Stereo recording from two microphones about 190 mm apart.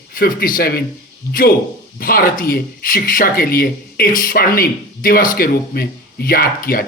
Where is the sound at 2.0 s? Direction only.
50° left (ahead or behind).